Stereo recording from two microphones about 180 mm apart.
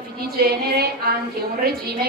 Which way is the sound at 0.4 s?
60° right (ahead or behind).